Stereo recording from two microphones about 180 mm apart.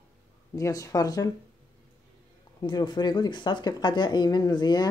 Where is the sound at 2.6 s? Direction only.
25° left (ahead or behind).